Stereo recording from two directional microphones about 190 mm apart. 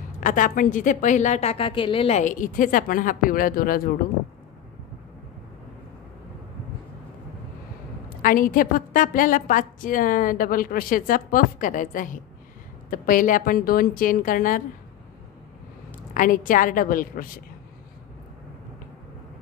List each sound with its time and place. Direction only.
0.2 s a woman's voice: 45° left (ahead or behind)
8.2 s a woman's voice: 45° left (ahead or behind)
16.1 s a woman's voice: 45° left (ahead or behind)